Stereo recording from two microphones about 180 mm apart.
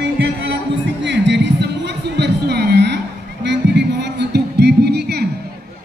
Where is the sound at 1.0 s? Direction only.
75° right (ahead or behind).